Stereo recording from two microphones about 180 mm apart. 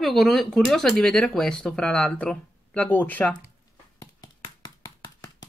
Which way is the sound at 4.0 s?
20° left (ahead or behind).